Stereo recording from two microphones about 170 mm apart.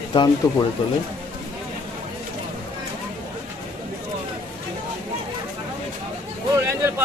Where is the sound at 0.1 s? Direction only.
25° left (ahead or behind).